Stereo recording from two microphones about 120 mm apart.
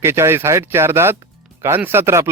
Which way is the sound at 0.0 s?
20° right (ahead or behind).